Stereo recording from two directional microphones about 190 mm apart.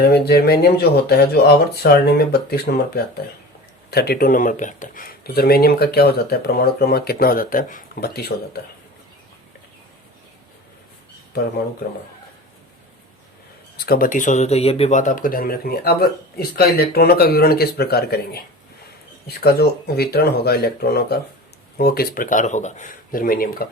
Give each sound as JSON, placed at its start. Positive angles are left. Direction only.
{"t": 0.0, "sound": "speech", "side_deg": 55}
{"t": 13.7, "sound": "speech", "side_deg": 50}